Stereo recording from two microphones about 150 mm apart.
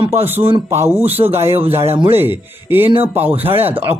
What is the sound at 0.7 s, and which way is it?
Speech, 15° right (ahead or behind).